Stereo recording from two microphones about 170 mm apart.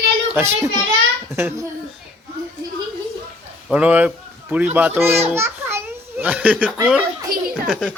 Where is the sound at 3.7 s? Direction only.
5° right (ahead or behind).